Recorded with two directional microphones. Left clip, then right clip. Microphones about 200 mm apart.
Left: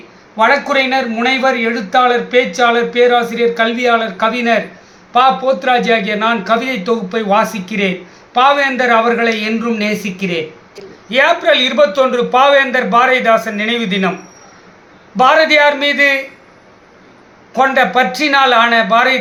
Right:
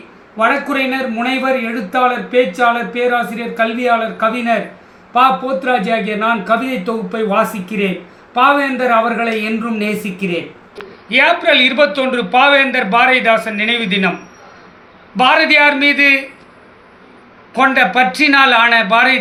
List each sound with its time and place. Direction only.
0.3 s a man's voice: 20° left (ahead or behind)
5.6 s a man's voice: 15° left (ahead or behind)
15.1 s a man's voice: 10° left (ahead or behind)
17.5 s a man's voice: 15° left (ahead or behind)